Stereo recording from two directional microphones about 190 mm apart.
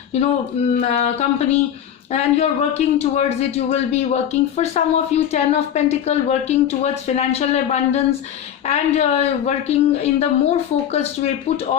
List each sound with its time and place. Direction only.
0.8 s a man's voice: 35° left (ahead or behind)